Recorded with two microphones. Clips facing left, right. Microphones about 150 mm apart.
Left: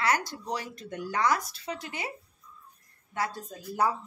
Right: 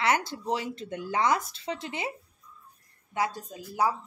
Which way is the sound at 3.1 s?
15° right (ahead or behind).